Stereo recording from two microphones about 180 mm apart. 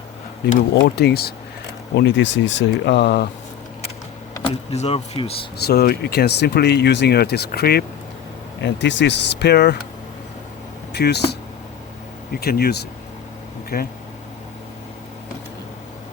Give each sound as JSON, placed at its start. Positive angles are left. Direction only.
{"t": 0.7, "sound": "speech", "side_deg": 65}
{"t": 2.0, "sound": "speech", "side_deg": 85}
{"t": 4.4, "sound": "speech", "side_deg": 35}
{"t": 5.6, "sound": "speech", "side_deg": 60}
{"t": 8.6, "sound": "speech", "side_deg": 80}
{"t": 10.9, "sound": "speech", "side_deg": 65}